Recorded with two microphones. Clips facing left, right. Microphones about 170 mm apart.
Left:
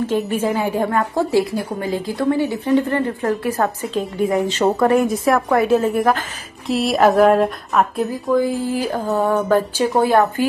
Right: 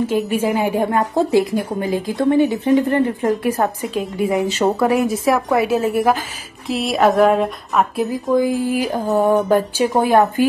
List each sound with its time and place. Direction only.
0.0 s a woman's voice: 10° right (ahead or behind)
8.1 s a woman's voice: 15° right (ahead or behind)